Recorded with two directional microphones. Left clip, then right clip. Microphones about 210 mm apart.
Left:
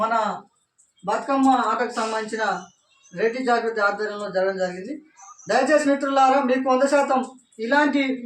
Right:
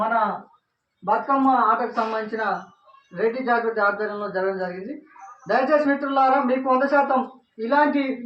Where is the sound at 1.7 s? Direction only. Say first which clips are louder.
Even; 10° left (ahead or behind).